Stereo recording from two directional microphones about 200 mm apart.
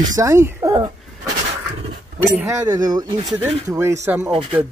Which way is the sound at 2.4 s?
15° right (ahead or behind).